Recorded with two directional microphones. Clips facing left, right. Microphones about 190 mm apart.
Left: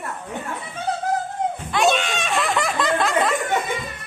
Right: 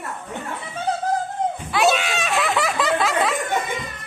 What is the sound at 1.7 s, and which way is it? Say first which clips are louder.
Snicker: even; 5° right (ahead or behind).